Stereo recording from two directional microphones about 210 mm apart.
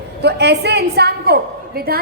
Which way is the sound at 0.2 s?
50° right (ahead or behind).